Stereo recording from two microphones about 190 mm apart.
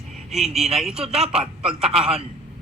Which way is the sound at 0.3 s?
Centre (ahead or behind).